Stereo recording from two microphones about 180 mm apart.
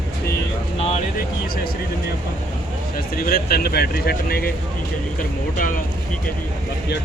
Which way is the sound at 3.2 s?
55° left (ahead or behind).